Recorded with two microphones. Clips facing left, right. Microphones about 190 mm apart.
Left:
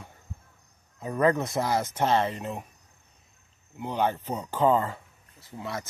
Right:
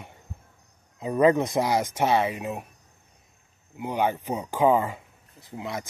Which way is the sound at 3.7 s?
10° right (ahead or behind).